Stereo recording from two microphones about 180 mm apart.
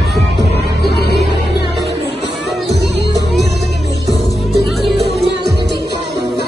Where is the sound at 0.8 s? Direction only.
65° left (ahead or behind).